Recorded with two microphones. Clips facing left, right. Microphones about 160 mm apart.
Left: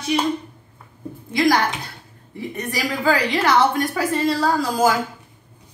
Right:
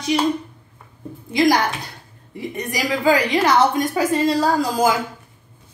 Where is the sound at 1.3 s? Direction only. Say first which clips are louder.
Right 1 dB; 20° right (ahead or behind).